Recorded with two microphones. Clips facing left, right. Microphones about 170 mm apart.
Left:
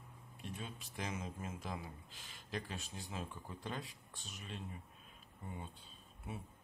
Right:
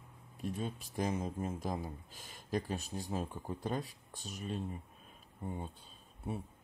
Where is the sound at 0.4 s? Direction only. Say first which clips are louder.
Right 9 dB; 40° right (ahead or behind).